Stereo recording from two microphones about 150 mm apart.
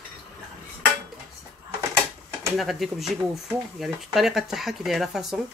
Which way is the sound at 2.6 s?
Centre (ahead or behind).